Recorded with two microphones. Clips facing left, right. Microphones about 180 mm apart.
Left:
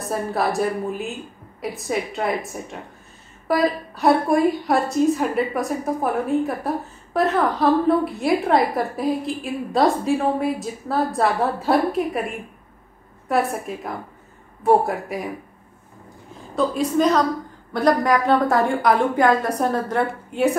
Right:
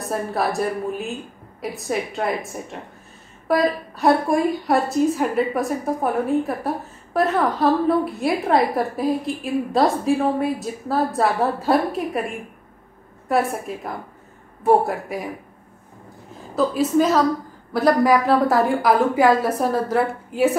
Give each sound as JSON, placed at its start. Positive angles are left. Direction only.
{"t": 0.0, "sound": "a woman's voice", "side_deg": 0}
{"t": 16.5, "sound": "a woman's voice", "side_deg": -5}